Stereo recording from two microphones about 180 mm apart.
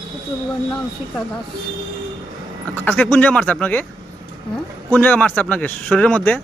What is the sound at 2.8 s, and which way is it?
Speech, 10° left (ahead or behind).